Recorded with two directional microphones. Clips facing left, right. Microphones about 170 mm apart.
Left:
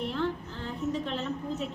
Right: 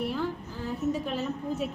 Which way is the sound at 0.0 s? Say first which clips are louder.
Even; 10° right (ahead or behind).